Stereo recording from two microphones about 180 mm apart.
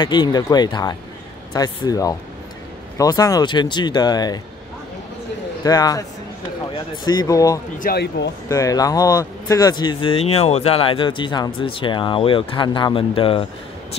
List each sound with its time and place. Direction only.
0.0 s speech: 25° left (ahead or behind)
5.6 s speech: 20° left (ahead or behind)
7.1 s speech: 20° left (ahead or behind)
7.8 s speech: 65° left (ahead or behind)
8.5 s speech: 20° left (ahead or behind)